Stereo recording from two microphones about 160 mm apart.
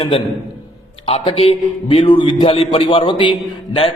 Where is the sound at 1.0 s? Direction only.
35° left (ahead or behind).